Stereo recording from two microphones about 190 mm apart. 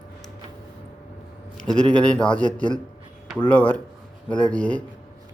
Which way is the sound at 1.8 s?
5° left (ahead or behind).